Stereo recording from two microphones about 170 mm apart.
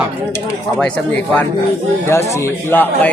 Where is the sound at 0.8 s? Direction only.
5° left (ahead or behind).